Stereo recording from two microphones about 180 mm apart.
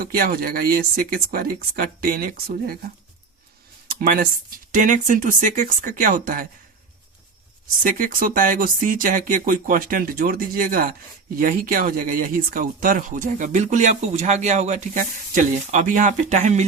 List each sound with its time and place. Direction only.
0.0 s speech: 55° right (ahead or behind)
3.8 s speech: 50° right (ahead or behind)
7.9 s speech: 50° right (ahead or behind)